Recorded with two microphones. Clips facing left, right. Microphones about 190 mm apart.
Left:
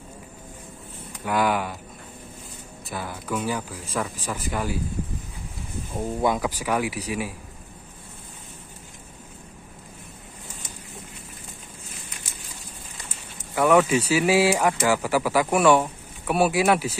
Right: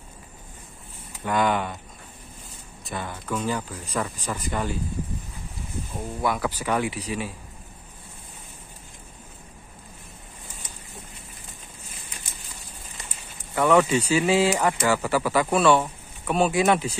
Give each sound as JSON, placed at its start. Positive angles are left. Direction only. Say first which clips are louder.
{"t": 1.2, "sound": "speech", "louder": "even", "side_deg": 5}
{"t": 2.9, "sound": "speech", "louder": "even", "side_deg": 5}
{"t": 5.9, "sound": "speech", "louder": "left 4 dB", "side_deg": 20}
{"t": 6.6, "sound": "speech", "louder": "even", "side_deg": 5}
{"t": 13.6, "sound": "speech", "louder": "left 1 dB", "side_deg": 10}